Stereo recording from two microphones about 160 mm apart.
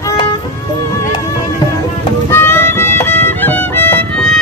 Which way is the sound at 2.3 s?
15° left (ahead or behind).